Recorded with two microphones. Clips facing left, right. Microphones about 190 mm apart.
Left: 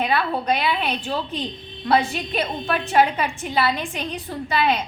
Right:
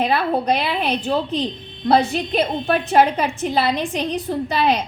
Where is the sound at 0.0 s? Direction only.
40° right (ahead or behind).